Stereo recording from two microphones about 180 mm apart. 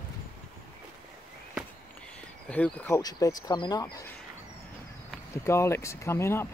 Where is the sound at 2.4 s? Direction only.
5° left (ahead or behind).